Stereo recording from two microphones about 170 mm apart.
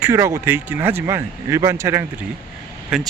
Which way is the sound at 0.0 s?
15° right (ahead or behind).